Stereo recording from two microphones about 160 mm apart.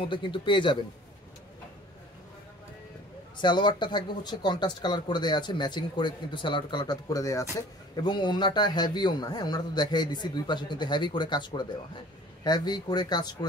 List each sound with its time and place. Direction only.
0.0 s a man's voice: 30° left (ahead or behind)
3.3 s a man's voice: 30° left (ahead or behind)